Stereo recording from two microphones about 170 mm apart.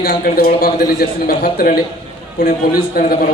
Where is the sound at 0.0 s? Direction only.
65° left (ahead or behind).